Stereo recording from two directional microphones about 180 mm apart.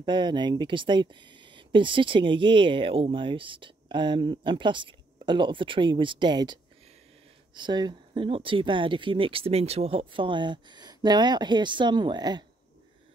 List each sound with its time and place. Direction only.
0.0 s speech: 25° right (ahead or behind)